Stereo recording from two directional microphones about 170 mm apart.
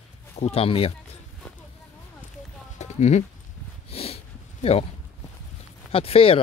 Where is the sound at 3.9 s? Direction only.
35° left (ahead or behind).